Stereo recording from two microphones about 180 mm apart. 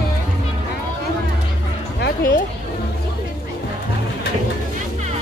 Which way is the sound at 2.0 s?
55° left (ahead or behind).